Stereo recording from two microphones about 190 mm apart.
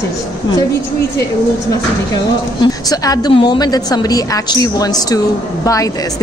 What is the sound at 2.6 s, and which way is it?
A woman's voice, 20° left (ahead or behind).